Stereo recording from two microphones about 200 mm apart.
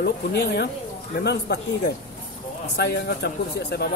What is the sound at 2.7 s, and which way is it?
Speech, 55° left (ahead or behind).